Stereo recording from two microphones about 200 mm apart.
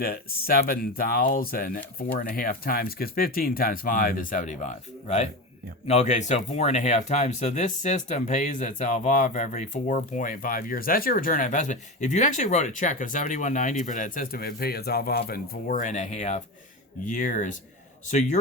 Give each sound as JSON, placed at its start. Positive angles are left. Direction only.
{"t": 0.0, "sound": "speech", "side_deg": 50}